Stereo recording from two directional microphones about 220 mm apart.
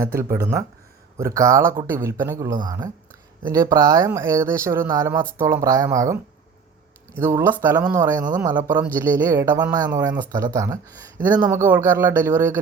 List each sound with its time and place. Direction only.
0.2 s speech: 10° right (ahead or behind)
7.2 s speech: 10° right (ahead or behind)